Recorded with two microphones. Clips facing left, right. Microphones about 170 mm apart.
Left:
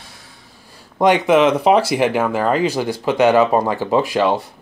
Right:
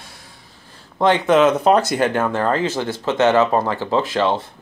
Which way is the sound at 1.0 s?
10° left (ahead or behind).